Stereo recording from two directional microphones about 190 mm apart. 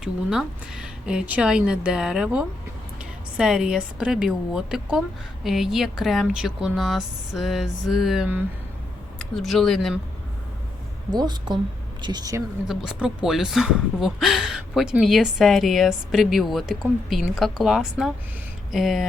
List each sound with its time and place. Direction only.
0.0 s speech: 5° right (ahead or behind)
11.1 s a woman's voice: 20° right (ahead or behind)
12.6 s speech: 5° right (ahead or behind)